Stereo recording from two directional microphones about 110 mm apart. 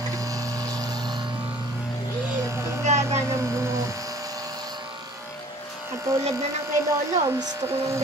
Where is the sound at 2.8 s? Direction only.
90° right.